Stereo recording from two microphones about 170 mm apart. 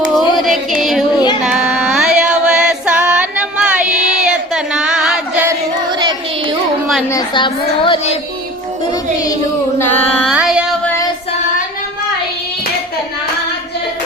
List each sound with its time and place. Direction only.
0.1 s a sound: centre (ahead or behind)
1.5 s female singing: 5° right (ahead or behind)
5.9 s child singing: 25° right (ahead or behind)
7.1 s a woman's voice: 25° left (ahead or behind)
8.9 s carnatic music: 20° left (ahead or behind)
10.2 s carnatic music: 5° right (ahead or behind)